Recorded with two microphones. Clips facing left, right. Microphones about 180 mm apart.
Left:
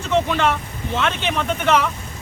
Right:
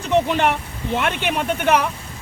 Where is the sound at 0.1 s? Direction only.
15° right (ahead or behind).